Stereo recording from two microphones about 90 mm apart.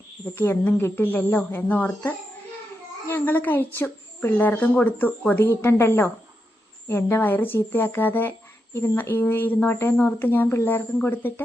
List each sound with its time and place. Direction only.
0.3 s a woman's voice: 25° left (ahead or behind)